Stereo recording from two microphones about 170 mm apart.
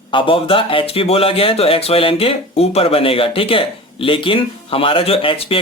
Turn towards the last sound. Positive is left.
turn(degrees=35)  # may be behind; listen again after turning